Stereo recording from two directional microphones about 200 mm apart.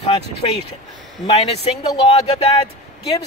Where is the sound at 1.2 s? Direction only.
30° left (ahead or behind).